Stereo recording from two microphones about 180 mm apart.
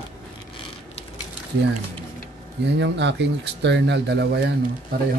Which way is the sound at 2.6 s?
75° right (ahead or behind).